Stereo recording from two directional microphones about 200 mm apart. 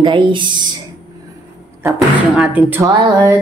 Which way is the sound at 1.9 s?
Centre (ahead or behind).